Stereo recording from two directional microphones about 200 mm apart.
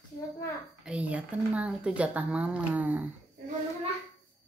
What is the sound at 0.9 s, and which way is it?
Speech, 5° right (ahead or behind).